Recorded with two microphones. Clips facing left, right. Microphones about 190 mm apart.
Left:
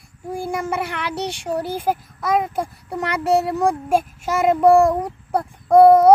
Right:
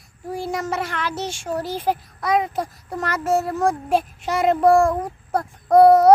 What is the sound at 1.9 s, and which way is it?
Speech, 5° left (ahead or behind).